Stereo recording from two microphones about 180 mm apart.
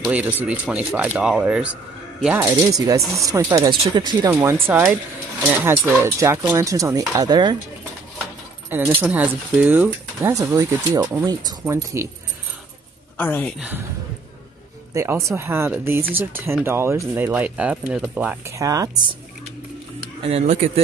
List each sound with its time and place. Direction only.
0.0 s speech: 10° right (ahead or behind); by 4.3 s 25° right (ahead or behind)
4.3 s speech: 10° right (ahead or behind)
8.6 s speech: 10° right (ahead or behind)
13.2 s a woman's voice: 10° left (ahead or behind)
13.6 s speech: 10° right (ahead or behind)
15.0 s speech: 15° right (ahead or behind)
20.2 s speech: 35° right (ahead or behind)